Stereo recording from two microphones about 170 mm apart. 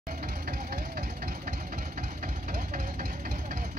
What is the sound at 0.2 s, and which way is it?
Vehicle, 60° right (ahead or behind).